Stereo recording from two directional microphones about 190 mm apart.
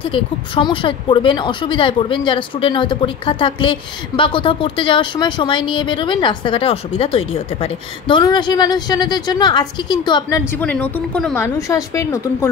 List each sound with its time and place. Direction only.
0.0 s speech: 25° left (ahead or behind)
10.6 s a woman's voice: 5° left (ahead or behind)